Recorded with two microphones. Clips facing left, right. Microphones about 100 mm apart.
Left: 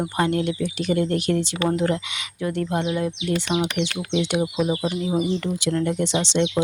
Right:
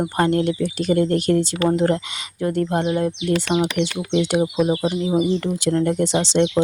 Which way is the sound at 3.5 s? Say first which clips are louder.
Right 3 dB; 20° right (ahead or behind).